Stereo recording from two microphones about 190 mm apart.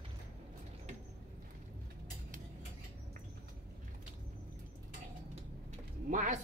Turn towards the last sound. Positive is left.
turn(degrees=-40)  # may be behind; listen again after turning